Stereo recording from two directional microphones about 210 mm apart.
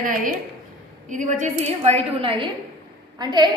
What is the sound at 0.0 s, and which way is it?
A woman's voice, 40° right (ahead or behind).